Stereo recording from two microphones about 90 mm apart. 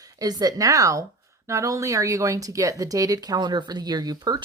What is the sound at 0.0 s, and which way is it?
Speech, 45° right (ahead or behind).